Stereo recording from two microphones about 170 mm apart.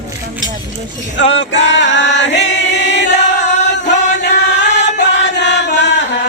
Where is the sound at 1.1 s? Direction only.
90° left.